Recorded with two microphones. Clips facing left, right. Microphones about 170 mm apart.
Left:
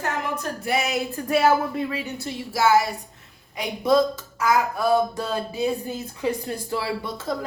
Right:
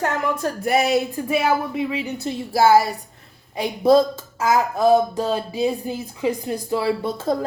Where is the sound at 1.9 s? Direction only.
20° right (ahead or behind).